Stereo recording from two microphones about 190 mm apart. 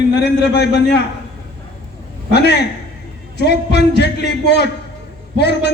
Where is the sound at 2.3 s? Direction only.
60° left (ahead or behind).